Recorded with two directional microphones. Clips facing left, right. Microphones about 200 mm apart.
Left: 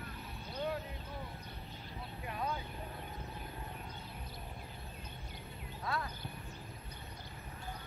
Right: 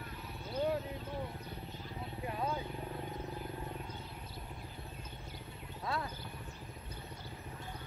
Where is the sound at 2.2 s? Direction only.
25° right (ahead or behind).